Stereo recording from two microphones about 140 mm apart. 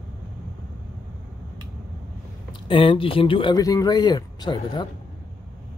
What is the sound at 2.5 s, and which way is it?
Speech, 40° left (ahead or behind).